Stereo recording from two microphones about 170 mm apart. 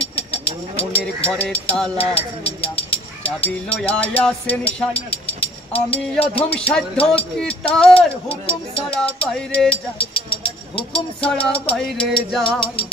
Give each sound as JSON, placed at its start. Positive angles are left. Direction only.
{"t": 0.7, "sound": "speech", "side_deg": 10}
{"t": 10.9, "sound": "speech", "side_deg": 5}
{"t": 11.7, "sound": "music", "side_deg": 0}